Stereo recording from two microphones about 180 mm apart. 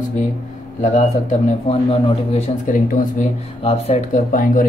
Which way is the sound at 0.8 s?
45° left (ahead or behind).